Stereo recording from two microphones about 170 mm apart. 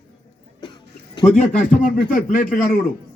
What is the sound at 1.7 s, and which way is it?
Speech, 50° left (ahead or behind).